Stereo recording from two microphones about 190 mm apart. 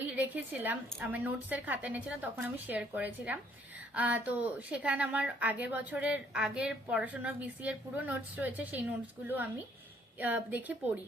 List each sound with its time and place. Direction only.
0.2 s a woman's voice: 10° right (ahead or behind)